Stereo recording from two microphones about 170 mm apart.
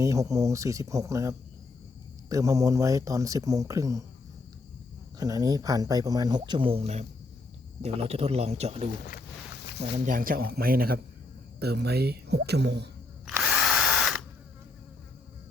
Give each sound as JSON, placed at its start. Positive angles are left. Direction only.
{"t": 0.0, "sound": "speech", "side_deg": -20}
{"t": 5.1, "sound": "a man's voice", "side_deg": -20}
{"t": 10.1, "sound": "speech", "side_deg": -55}
{"t": 11.6, "sound": "speech", "side_deg": -70}
{"t": 13.4, "sound": "drill", "side_deg": -5}